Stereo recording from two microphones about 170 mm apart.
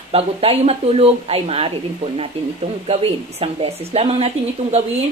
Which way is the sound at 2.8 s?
35° right (ahead or behind).